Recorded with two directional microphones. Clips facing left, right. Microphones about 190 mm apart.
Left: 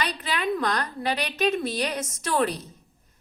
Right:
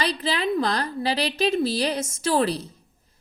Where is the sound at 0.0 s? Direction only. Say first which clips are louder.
Right 3 dB; 30° right (ahead or behind).